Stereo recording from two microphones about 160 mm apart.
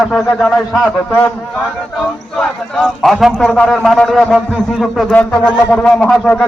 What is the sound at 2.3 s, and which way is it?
A man's voice, centre (ahead or behind).